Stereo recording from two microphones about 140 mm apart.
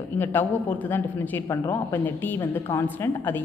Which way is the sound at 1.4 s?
25° left (ahead or behind).